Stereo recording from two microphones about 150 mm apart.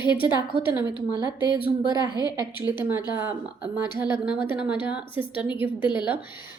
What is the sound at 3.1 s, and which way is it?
A woman's voice, 15° right (ahead or behind).